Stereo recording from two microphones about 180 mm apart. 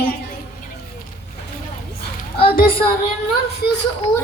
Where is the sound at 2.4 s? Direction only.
50° left (ahead or behind).